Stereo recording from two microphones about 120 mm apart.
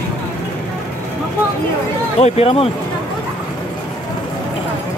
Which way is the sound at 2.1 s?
60° left (ahead or behind).